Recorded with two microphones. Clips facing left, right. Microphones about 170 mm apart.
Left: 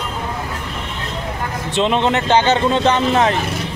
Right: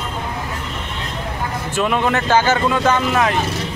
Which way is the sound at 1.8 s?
25° left (ahead or behind).